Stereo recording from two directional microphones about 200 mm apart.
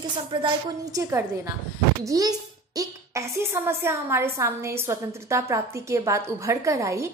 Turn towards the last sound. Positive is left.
turn(degrees=-15)  # may be behind; listen again after turning